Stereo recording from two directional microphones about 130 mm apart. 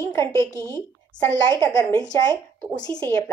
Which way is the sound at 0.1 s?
25° left (ahead or behind).